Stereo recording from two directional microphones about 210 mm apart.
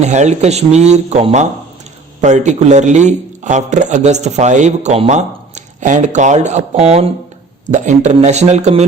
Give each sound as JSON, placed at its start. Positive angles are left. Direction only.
{"t": 0.0, "sound": "a man's voice", "side_deg": -35}